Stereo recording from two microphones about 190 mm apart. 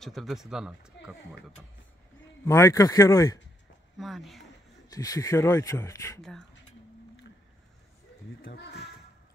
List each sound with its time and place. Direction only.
0.0 s speech: centre (ahead or behind)
2.4 s speech: 15° left (ahead or behind)
4.0 s speech: centre (ahead or behind)
4.9 s speech: 20° left (ahead or behind)
8.4 s speech: 60° left (ahead or behind)